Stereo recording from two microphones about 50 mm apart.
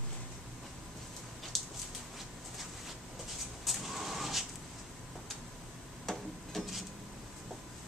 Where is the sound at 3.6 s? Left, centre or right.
Centre.